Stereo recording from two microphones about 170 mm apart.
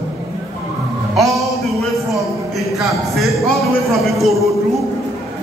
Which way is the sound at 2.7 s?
Centre (ahead or behind).